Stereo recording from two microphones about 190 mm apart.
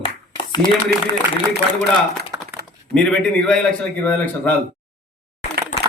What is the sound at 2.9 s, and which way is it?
A man's voice, 5° left (ahead or behind).